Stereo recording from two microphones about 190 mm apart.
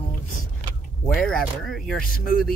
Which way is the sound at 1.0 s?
5° left (ahead or behind).